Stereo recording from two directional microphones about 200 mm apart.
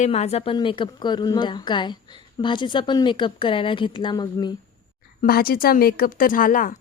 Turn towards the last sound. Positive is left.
turn(degrees=45)  # may be behind; listen again after turning